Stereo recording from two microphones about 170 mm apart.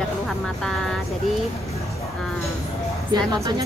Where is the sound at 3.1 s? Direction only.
25° right (ahead or behind).